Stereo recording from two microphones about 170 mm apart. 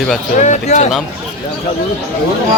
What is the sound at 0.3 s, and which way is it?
Speech, 45° left (ahead or behind).